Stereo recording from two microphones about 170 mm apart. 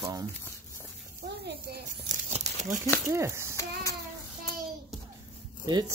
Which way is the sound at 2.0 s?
45° right (ahead or behind).